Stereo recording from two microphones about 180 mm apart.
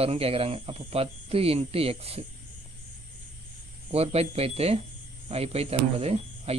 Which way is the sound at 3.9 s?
35° right (ahead or behind).